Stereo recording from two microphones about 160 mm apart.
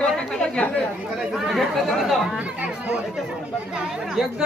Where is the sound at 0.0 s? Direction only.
5° left (ahead or behind).